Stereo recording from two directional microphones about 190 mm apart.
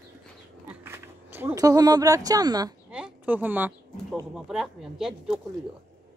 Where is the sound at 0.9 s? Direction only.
15° right (ahead or behind).